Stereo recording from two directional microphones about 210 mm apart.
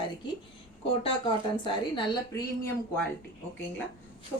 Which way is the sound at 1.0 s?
25° left (ahead or behind).